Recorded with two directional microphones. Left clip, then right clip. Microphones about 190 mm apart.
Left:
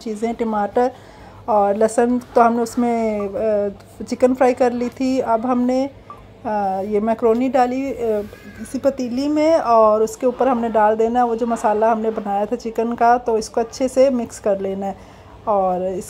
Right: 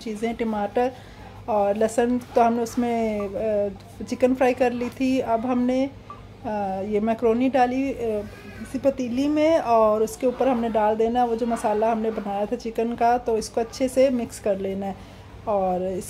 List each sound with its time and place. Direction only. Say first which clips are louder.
0.0 s a woman's voice: left 5 dB; 20° left (ahead or behind)